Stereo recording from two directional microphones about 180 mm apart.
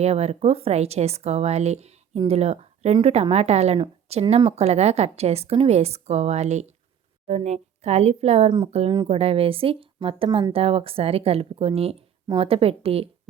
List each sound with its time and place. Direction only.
0.0 s speech: 35° right (ahead or behind)